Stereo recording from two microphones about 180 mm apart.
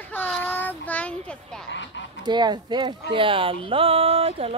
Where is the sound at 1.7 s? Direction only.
90° left.